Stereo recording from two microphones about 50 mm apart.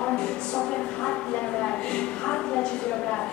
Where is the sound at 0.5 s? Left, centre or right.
Centre.